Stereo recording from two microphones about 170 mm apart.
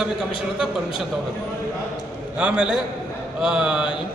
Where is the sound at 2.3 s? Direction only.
5° right (ahead or behind).